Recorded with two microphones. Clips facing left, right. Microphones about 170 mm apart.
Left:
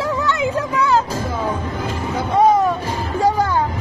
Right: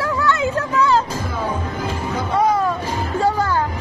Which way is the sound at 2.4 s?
20° left (ahead or behind).